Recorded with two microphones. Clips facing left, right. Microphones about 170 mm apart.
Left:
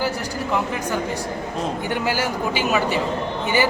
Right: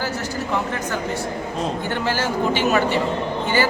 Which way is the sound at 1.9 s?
10° left (ahead or behind).